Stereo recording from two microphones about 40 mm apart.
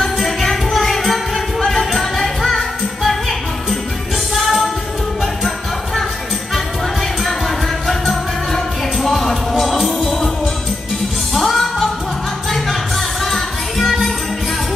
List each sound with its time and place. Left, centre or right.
0.0 s music: centre
4.4 s music: centre
7.2 s music: centre
10.1 s music: centre
11.3 s music: centre